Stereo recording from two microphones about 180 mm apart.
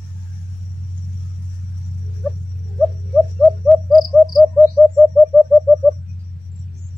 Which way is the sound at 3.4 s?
Centre (ahead or behind).